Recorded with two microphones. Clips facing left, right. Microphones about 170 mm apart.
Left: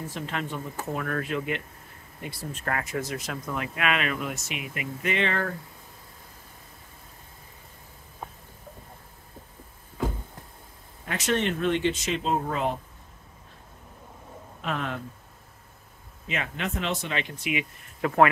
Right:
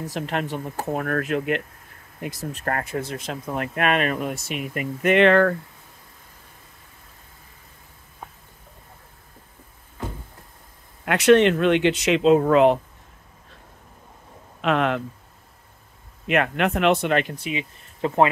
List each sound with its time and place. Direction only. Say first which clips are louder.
0.1 s speech: right 8 dB; 60° right (ahead or behind)
0.5 s speech: right 5 dB; 40° right (ahead or behind)
2.2 s speech: right 5 dB; 45° right (ahead or behind)
3.1 s speech: right 3 dB; 25° right (ahead or behind)
3.5 s speech: right 6 dB; 50° right (ahead or behind)
5.1 s speech: right 13 dB; 70° right (ahead or behind)
11.1 s speech: right 11 dB; 70° right (ahead or behind); by 12.7 s 90° right
14.6 s speech: right 10 dB; 90° right
16.3 s speech: right 10 dB; 65° right (ahead or behind)
17.4 s speech: right 1 dB; 30° right (ahead or behind)